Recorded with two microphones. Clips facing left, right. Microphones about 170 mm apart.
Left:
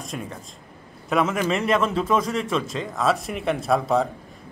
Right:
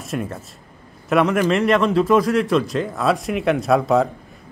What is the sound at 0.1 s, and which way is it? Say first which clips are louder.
A man's voice: right 10 dB; centre (ahead or behind).